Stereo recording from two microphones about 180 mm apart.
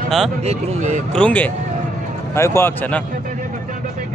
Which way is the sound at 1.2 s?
5° left (ahead or behind).